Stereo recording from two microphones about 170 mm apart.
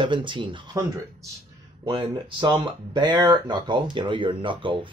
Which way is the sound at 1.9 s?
30° right (ahead or behind).